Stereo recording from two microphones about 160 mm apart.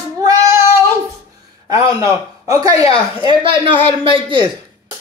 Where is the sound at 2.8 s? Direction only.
35° left (ahead or behind).